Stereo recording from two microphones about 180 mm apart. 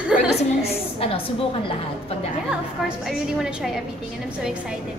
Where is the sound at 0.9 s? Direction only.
30° left (ahead or behind).